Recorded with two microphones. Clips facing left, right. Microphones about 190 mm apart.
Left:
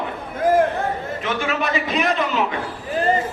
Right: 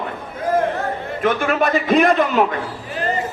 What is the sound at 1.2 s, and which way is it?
A man's voice, 50° right (ahead or behind).